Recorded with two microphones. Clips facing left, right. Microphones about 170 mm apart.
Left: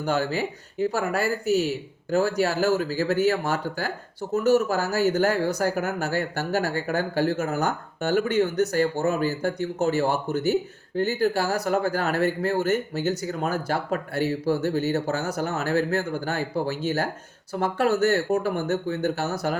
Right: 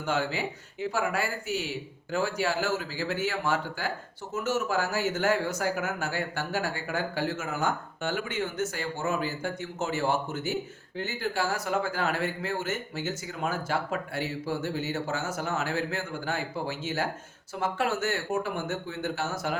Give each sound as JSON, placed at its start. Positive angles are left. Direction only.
{"t": 0.0, "sound": "speech", "side_deg": 40}